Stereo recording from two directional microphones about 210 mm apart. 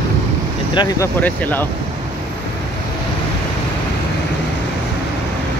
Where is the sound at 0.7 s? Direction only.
20° left (ahead or behind).